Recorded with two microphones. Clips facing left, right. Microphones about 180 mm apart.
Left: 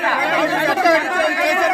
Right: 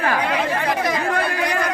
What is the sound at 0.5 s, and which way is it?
Speech, 90° left.